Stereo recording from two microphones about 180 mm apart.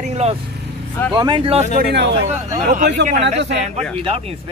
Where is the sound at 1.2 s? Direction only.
25° right (ahead or behind).